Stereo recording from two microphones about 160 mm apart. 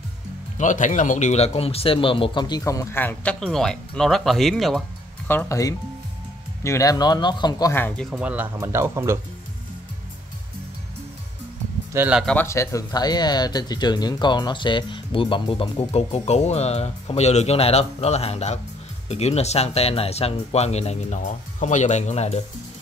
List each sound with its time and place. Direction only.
0.6 s speech: 50° left (ahead or behind); by 4.8 s centre (ahead or behind)
5.3 s speech: 15° left (ahead or behind)
8.1 s speech: 10° right (ahead or behind)
11.9 s speech: 15° right (ahead or behind)
12.4 s speech: 20° left (ahead or behind); by 22.4 s 45° left (ahead or behind)